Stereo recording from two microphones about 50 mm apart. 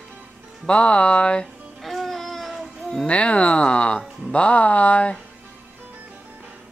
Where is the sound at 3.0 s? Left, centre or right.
Left.